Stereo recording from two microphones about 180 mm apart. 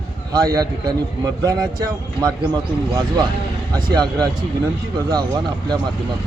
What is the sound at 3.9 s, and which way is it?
Speech, 20° right (ahead or behind).